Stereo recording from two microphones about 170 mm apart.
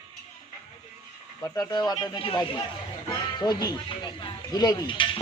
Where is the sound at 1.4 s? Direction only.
20° left (ahead or behind).